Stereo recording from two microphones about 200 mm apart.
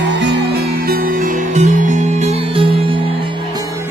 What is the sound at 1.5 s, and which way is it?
Music, 35° right (ahead or behind).